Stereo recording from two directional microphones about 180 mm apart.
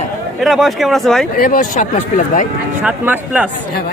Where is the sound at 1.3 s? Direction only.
50° left (ahead or behind).